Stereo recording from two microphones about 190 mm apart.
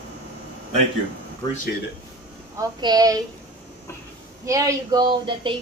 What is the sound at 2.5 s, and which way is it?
Speech, 20° right (ahead or behind).